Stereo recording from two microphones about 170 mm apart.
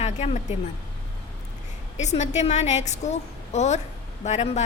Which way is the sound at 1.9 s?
40° left (ahead or behind).